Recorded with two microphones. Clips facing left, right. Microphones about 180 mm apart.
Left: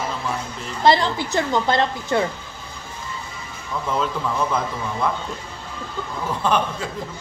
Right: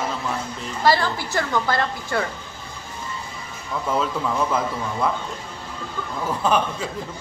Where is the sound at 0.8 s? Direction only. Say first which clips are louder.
Left 3 dB; 20° left (ahead or behind).